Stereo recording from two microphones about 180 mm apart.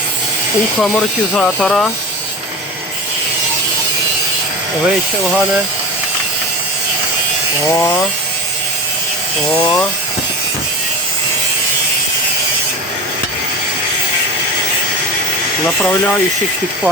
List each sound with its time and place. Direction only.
0.8 s speech: 5° left (ahead or behind)
7.8 s speech: 10° left (ahead or behind)
15.6 s speech: 10° left (ahead or behind)